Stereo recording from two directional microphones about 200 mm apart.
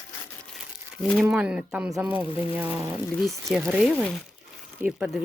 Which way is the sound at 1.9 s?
10° right (ahead or behind).